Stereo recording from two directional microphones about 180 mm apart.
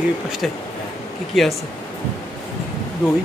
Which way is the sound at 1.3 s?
Centre (ahead or behind).